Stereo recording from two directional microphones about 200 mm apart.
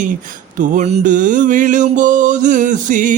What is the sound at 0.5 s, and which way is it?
Mantra, 40° right (ahead or behind).